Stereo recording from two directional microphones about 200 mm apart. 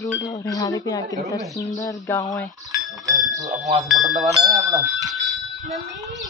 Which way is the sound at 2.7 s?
15° right (ahead or behind).